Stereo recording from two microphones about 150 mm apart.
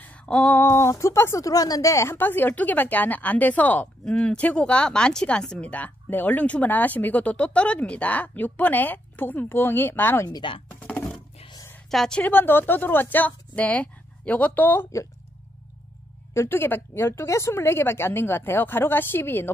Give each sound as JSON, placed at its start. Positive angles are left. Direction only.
{"t": 0.0, "sound": "speech", "side_deg": 10}
{"t": 10.2, "sound": "speech", "side_deg": 30}
{"t": 10.7, "sound": "a sound", "side_deg": 10}
{"t": 11.9, "sound": "speech", "side_deg": 5}
{"t": 16.3, "sound": "speech", "side_deg": 15}